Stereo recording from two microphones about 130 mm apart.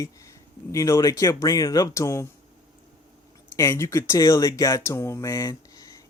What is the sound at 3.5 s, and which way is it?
Speech, 25° left (ahead or behind).